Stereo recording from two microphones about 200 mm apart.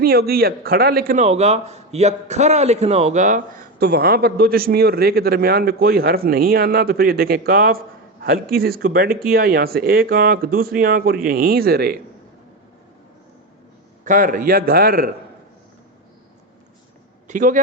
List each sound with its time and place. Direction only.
0.0 s a man's voice: 50° right (ahead or behind)
1.2 s a man's voice: 35° right (ahead or behind); by 11.9 s 50° right (ahead or behind)
14.0 s a man's voice: 40° right (ahead or behind)
17.2 s a man's voice: 40° right (ahead or behind)